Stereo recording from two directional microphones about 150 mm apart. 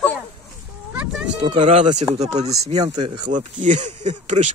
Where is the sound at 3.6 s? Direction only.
55° right (ahead or behind).